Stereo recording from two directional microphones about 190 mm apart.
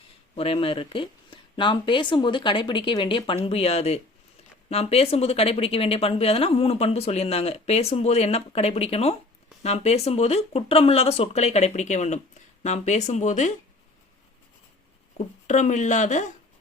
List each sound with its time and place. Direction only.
0.3 s speech: 30° left (ahead or behind)
15.4 s speech: 40° left (ahead or behind)